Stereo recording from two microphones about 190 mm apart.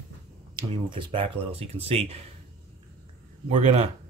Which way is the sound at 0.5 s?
25° right (ahead or behind).